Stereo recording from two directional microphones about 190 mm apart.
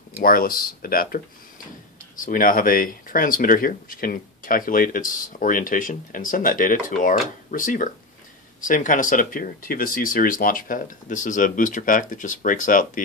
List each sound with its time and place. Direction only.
0.2 s speech: 50° left (ahead or behind)
2.2 s speech: 45° left (ahead or behind)